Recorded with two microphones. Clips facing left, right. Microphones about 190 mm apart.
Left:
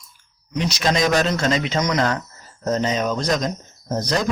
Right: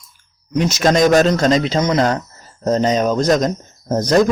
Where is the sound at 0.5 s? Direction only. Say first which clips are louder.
Right 6 dB; 50° right (ahead or behind).